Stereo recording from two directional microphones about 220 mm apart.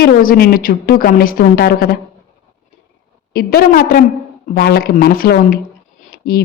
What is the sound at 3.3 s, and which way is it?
A woman's voice, 45° left (ahead or behind).